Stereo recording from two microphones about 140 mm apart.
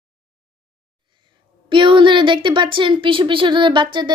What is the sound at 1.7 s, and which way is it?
Speech, 35° right (ahead or behind).